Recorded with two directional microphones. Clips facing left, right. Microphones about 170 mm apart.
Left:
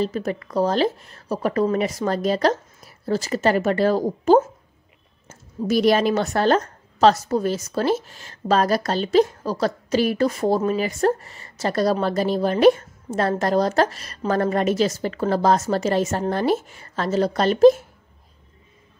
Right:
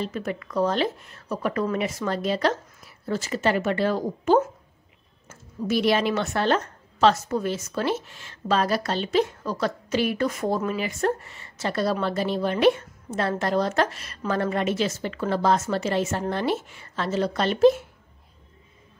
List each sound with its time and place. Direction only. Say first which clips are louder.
0.0 s a woman's voice: left 5 dB; 35° left (ahead or behind)